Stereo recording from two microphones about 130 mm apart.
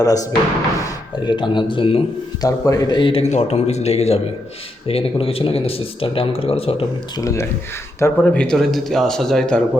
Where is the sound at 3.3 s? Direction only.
60° left (ahead or behind).